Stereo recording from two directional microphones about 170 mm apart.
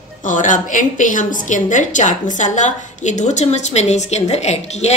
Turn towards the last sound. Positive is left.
turn(degrees=40)  # may be behind; listen again after turning